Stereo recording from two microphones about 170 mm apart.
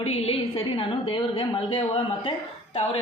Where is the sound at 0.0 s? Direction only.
35° left (ahead or behind).